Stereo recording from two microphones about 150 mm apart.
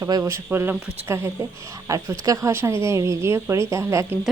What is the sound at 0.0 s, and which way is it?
Speech, 20° right (ahead or behind).